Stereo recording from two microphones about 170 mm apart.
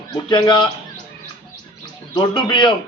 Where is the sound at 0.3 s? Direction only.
25° left (ahead or behind).